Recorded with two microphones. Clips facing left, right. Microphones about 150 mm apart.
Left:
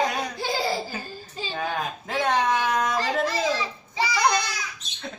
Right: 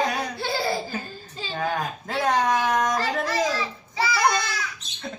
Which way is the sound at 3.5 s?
15° left (ahead or behind).